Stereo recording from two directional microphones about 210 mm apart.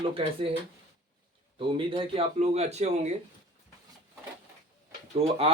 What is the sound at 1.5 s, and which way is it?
Speech, 25° right (ahead or behind).